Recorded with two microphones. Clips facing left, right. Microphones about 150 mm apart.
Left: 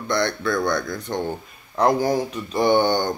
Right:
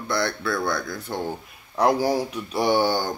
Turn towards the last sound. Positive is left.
turn(degrees=-5)  # may be behind; listen again after turning